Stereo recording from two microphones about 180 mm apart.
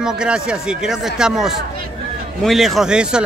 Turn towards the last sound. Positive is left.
turn(degrees=-5)  # may be behind; listen again after turning